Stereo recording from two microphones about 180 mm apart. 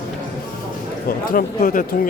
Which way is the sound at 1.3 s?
50° left (ahead or behind).